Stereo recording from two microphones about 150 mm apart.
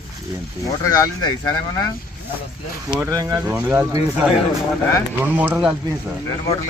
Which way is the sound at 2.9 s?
25° right (ahead or behind).